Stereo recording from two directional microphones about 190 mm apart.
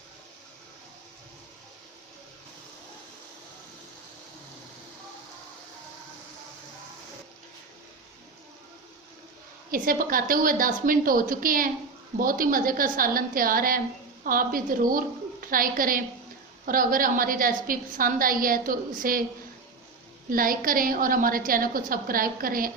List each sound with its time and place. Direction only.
9.7 s a woman's voice: 45° right (ahead or behind)
20.3 s a woman's voice: 45° right (ahead or behind)